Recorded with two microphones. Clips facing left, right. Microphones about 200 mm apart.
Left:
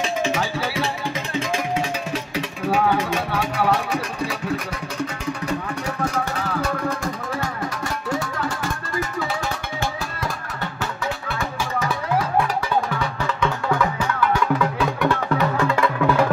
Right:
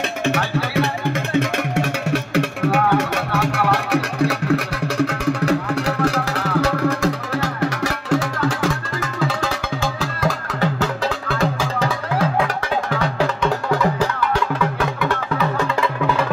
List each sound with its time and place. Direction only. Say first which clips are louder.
0.2 s music: right 2 dB; 65° right (ahead or behind); by 11.5 s 90° right
12.9 s music: right 6 dB; 85° right